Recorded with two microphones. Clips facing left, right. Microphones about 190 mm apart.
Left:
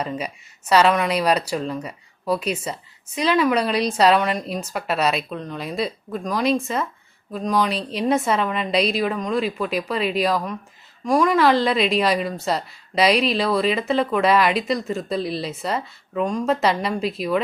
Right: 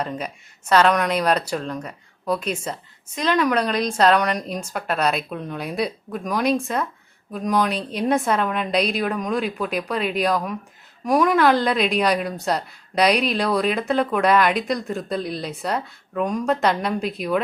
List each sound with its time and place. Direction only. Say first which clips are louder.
0.0 s a woman's voice: left 1 dB; 5° left (ahead or behind)
5.3 s a woman's voice: even; 10° right (ahead or behind)